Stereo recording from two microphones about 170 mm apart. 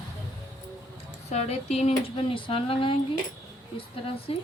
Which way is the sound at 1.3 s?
40° left (ahead or behind).